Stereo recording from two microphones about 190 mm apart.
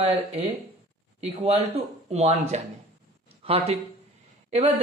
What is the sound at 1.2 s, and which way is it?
Speech, 35° right (ahead or behind).